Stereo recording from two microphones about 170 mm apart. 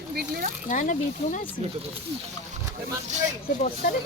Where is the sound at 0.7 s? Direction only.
50° left (ahead or behind).